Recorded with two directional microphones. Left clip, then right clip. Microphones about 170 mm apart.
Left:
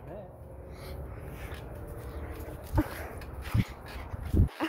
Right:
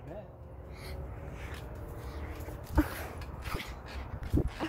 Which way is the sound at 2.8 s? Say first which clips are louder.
Even; 25° right (ahead or behind).